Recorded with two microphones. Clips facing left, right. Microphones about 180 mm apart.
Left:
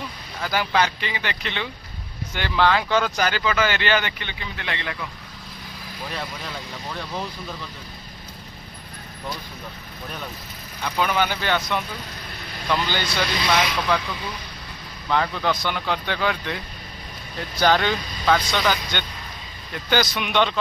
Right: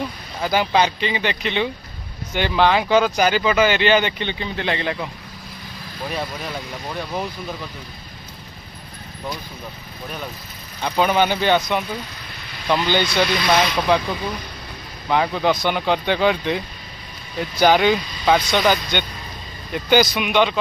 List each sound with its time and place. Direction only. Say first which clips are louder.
0.4 s speech: right 4 dB; 20° right (ahead or behind)
6.0 s speech: right 5 dB; 15° right (ahead or behind)
10.8 s speech: right 5 dB; 25° right (ahead or behind)
15.0 s speech: right 4 dB; 15° right (ahead or behind)